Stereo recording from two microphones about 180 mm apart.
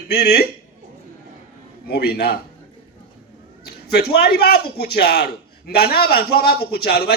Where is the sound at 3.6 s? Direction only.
60° left (ahead or behind).